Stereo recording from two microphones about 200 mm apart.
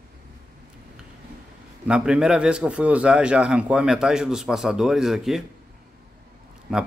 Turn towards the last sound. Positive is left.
turn(degrees=-5)  # may be behind; listen again after turning